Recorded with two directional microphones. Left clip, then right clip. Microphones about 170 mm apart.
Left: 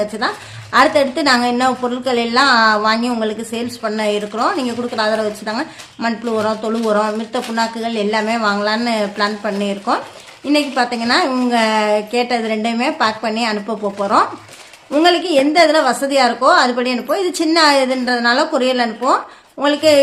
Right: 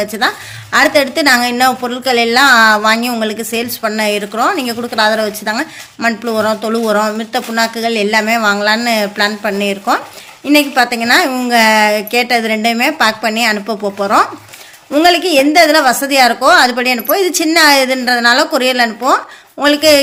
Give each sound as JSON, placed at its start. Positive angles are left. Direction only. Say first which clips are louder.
{"t": 0.0, "sound": "a woman's voice", "louder": "right 4 dB", "side_deg": -15}